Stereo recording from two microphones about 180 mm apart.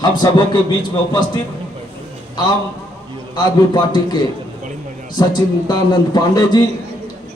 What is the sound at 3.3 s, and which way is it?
Speech, 25° left (ahead or behind).